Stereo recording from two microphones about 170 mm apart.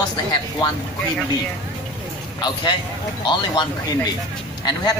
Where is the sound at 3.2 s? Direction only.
25° left (ahead or behind).